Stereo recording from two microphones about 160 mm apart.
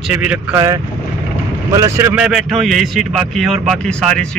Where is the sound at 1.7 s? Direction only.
15° right (ahead or behind).